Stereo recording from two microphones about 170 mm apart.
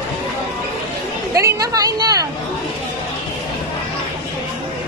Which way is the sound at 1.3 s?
20° right (ahead or behind).